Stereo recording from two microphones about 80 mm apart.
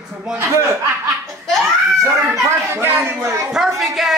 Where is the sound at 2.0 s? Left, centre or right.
Right.